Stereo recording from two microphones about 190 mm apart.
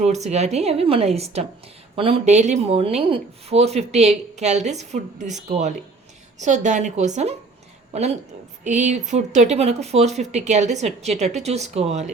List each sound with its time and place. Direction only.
0.0 s speech: 35° right (ahead or behind)